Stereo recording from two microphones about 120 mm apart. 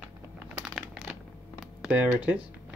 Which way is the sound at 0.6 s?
10° right (ahead or behind).